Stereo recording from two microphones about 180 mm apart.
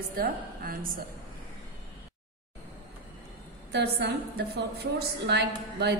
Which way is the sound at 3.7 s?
70° right (ahead or behind).